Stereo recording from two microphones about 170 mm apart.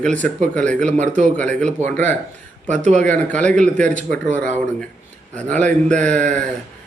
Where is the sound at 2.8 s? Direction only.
45° right (ahead or behind).